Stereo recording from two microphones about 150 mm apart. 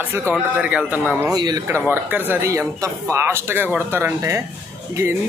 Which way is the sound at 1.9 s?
15° right (ahead or behind).